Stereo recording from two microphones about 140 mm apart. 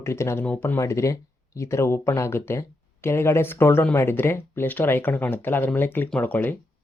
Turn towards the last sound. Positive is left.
turn(degrees=10)  # may be behind; listen again after turning